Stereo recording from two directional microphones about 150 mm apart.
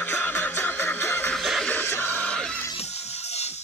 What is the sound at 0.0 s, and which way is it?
Music, 10° left (ahead or behind).